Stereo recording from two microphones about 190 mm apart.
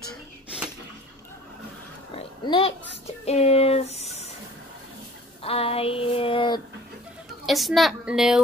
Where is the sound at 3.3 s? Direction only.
35° left (ahead or behind).